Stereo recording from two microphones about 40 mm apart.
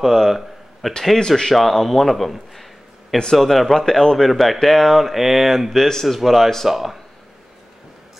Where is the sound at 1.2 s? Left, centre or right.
Centre.